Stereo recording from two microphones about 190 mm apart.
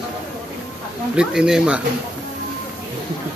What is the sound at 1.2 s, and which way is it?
Speech, 5° right (ahead or behind).